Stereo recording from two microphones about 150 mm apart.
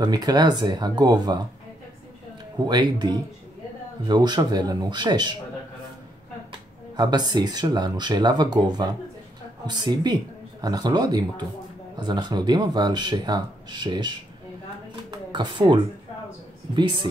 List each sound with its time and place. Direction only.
0.0 s speech: 25° right (ahead or behind)
2.6 s speech: 30° right (ahead or behind)
7.0 s speech: 30° right (ahead or behind)